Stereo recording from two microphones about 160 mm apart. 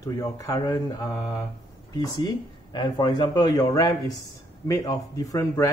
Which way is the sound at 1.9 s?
25° left (ahead or behind).